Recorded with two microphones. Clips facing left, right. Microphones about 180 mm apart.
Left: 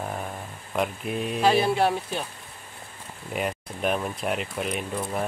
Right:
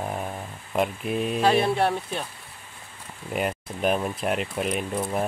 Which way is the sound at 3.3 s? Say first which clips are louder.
Right 2 dB; centre (ahead or behind).